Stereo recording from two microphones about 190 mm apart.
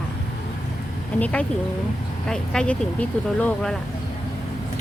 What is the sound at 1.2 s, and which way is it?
Speech, 5° left (ahead or behind).